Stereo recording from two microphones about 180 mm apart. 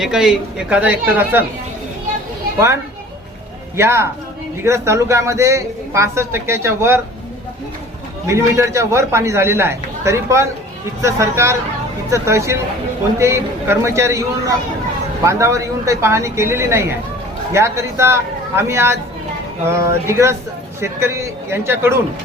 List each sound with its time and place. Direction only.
0.0 s a man's voice: centre (ahead or behind)
3.8 s a man's voice: 15° right (ahead or behind)
8.3 s a man's voice: 15° right (ahead or behind)